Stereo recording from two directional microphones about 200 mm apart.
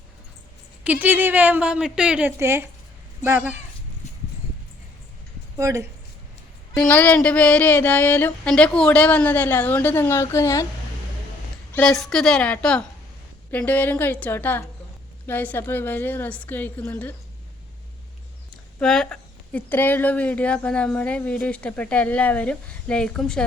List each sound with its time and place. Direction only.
0.9 s a woman's voice: 10° right (ahead or behind)
5.5 s a woman's voice: 15° right (ahead or behind)
6.7 s a sound: 10° left (ahead or behind)
11.7 s speech: 5° left (ahead or behind)
13.5 s a sound: 10° left (ahead or behind)
18.5 s speech: centre (ahead or behind)